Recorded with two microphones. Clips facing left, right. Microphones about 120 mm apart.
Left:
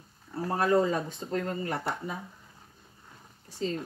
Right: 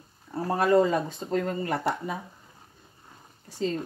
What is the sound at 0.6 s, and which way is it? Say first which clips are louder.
Speech: right 4 dB; 90° right.